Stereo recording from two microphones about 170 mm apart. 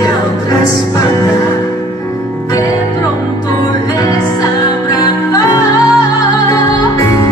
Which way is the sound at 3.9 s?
20° left (ahead or behind).